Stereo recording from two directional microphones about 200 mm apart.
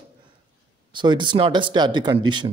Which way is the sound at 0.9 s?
25° right (ahead or behind).